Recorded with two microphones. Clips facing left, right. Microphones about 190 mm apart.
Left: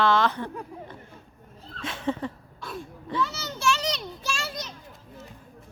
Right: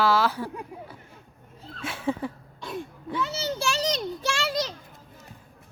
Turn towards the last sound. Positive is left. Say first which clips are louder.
# right 6 dB
turn(degrees=-85)